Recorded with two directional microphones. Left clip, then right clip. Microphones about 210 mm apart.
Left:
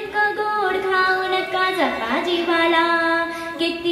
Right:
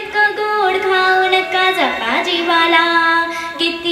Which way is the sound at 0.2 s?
50° right (ahead or behind).